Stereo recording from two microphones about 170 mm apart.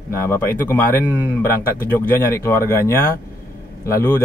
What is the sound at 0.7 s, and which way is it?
Speech, 15° left (ahead or behind).